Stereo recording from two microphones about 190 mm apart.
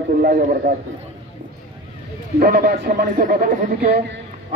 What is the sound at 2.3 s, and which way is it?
Speech, 55° right (ahead or behind).